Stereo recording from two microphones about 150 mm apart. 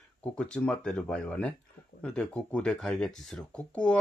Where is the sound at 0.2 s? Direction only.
5° left (ahead or behind).